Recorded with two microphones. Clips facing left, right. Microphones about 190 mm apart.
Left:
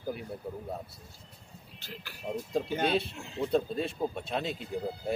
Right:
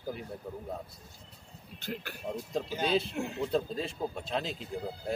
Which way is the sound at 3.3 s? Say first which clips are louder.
Left 4 dB; centre (ahead or behind).